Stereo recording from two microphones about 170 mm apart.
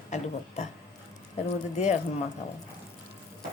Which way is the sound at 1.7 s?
45° left (ahead or behind).